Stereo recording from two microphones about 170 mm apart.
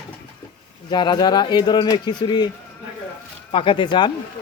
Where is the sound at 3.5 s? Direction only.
30° left (ahead or behind).